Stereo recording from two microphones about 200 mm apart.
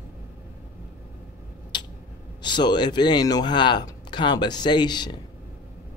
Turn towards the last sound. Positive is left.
turn(degrees=20)  # may be behind; listen again after turning